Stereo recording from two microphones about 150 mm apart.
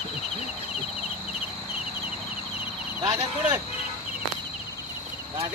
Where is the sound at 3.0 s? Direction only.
25° right (ahead or behind).